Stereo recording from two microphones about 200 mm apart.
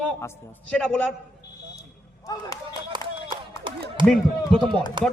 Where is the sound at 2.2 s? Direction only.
15° left (ahead or behind).